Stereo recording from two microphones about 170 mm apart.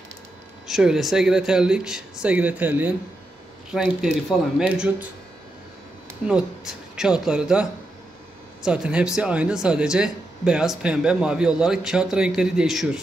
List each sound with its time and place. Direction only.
0.7 s speech: centre (ahead or behind)
6.2 s speech: 5° right (ahead or behind)
8.6 s speech: 5° right (ahead or behind)